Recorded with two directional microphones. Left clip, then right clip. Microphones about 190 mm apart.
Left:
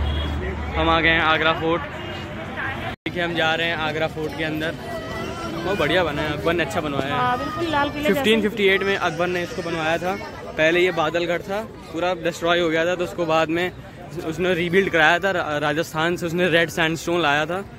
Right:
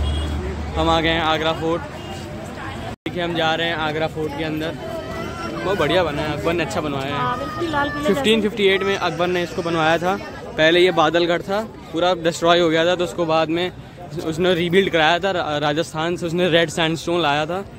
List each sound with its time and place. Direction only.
0.7 s speech: 30° right (ahead or behind)
3.2 s a man's voice: 15° right (ahead or behind)
7.7 s speech: 20° left (ahead or behind)
8.1 s a man's voice: 5° right (ahead or behind)
9.7 s a man's voice: 30° right (ahead or behind)
13.3 s a man's voice: 5° right (ahead or behind)